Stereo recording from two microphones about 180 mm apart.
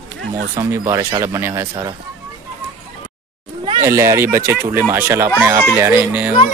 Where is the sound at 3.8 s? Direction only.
15° right (ahead or behind).